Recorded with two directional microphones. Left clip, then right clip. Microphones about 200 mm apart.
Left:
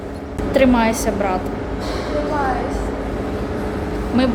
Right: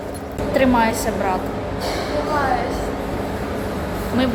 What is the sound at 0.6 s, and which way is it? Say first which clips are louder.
Speech: left 2 dB; 35° left (ahead or behind).